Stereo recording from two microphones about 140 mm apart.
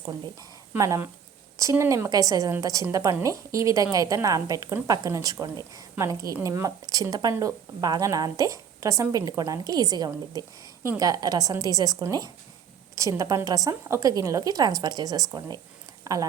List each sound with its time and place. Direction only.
0.8 s speech: 20° right (ahead or behind)